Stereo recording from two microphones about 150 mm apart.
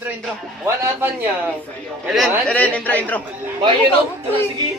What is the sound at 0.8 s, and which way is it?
Speech, 15° right (ahead or behind).